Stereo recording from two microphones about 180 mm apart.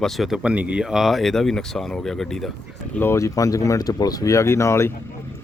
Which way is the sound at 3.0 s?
15° left (ahead or behind).